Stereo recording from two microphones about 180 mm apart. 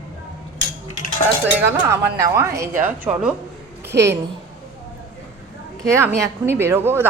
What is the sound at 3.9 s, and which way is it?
Speech, 65° right (ahead or behind).